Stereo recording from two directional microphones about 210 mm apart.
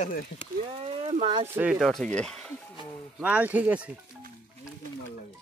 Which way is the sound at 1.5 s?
5° right (ahead or behind).